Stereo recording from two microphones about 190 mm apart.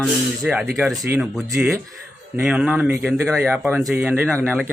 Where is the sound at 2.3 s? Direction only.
5° right (ahead or behind).